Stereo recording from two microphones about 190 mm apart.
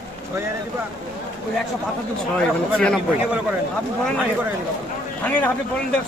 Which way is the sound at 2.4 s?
5° left (ahead or behind).